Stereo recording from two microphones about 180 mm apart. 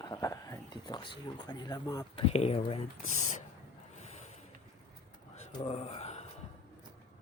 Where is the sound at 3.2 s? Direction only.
40° left (ahead or behind).